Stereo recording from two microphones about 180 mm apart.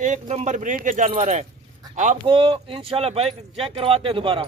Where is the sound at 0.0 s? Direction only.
40° right (ahead or behind).